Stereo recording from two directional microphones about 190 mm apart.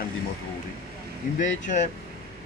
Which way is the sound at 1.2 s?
45° left (ahead or behind).